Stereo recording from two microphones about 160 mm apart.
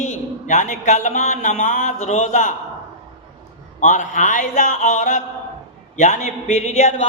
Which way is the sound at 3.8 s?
50° left (ahead or behind).